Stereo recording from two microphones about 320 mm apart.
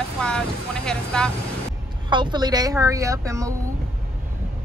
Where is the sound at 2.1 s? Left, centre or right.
Centre.